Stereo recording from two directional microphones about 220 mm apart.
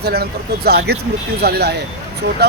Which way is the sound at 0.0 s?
45° right (ahead or behind).